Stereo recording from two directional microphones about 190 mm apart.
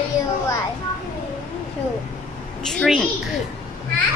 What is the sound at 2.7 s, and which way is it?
Speech, centre (ahead or behind).